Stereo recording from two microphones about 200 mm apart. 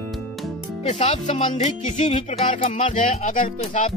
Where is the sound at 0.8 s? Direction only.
35° left (ahead or behind).